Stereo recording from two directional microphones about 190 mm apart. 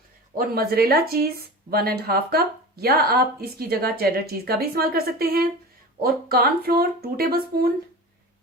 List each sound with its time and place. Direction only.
0.3 s speech: 50° right (ahead or behind)